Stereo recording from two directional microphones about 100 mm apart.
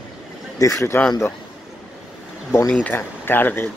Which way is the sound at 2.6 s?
15° left (ahead or behind).